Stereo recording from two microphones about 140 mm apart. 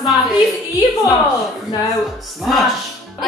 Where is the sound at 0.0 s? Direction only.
Centre (ahead or behind).